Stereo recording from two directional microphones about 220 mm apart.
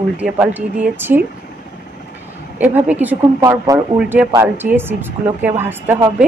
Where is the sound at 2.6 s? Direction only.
10° right (ahead or behind).